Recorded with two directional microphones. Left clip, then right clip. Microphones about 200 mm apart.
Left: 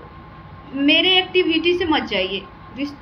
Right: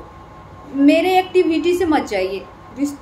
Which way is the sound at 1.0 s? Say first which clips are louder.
Right 1 dB; 15° right (ahead or behind).